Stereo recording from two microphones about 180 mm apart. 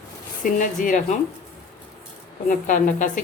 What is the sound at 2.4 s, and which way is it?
Speech, 45° left (ahead or behind).